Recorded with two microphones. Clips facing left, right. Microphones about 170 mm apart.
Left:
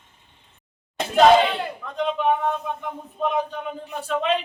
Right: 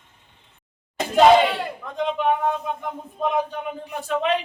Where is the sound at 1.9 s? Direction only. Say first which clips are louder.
Even; 15° right (ahead or behind).